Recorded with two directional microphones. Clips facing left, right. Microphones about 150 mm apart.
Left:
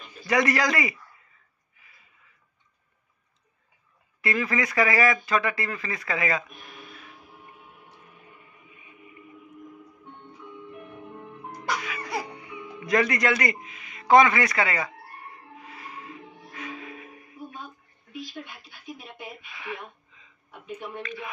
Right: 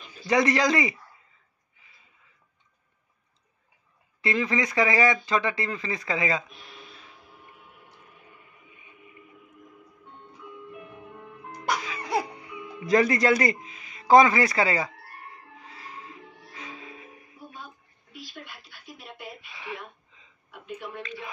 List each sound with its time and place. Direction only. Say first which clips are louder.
0.3 s speech: right 1 dB; 25° right (ahead or behind)
1.8 s a sound: left 1 dB; 25° right (ahead or behind)
4.2 s speech: right 1 dB; 20° right (ahead or behind)
6.5 s speech: left 2 dB; 50° left (ahead or behind)
11.8 s music: right 4 dB; 25° right (ahead or behind)
12.8 s speech: right 3 dB; 30° right (ahead or behind)
16.5 s music: left 5 dB; 25° right (ahead or behind)
21.0 s speech: left 2 dB; 25° right (ahead or behind)